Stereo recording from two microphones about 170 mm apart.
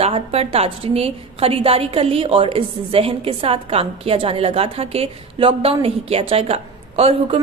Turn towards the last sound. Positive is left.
turn(degrees=-35)  # may be behind; listen again after turning